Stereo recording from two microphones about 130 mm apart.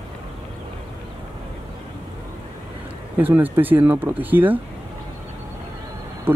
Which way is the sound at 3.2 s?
15° right (ahead or behind).